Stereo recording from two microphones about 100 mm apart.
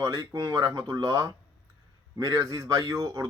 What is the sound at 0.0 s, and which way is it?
Speech, 30° right (ahead or behind).